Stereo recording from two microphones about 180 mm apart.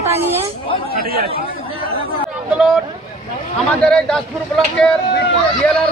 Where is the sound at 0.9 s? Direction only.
55° right (ahead or behind).